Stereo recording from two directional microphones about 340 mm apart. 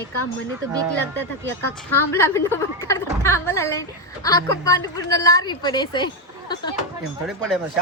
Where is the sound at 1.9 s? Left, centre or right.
Centre.